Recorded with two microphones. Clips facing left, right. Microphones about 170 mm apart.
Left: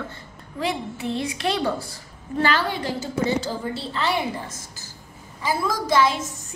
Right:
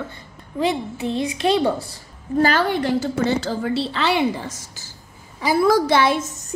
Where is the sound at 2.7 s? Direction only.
60° right (ahead or behind).